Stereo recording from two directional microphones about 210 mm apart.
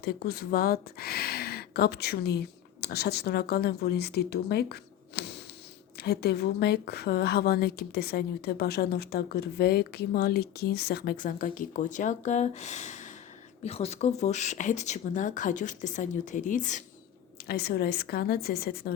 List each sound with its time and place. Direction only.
0.0 s speech: 50° left (ahead or behind)
17.4 s speech: 50° left (ahead or behind)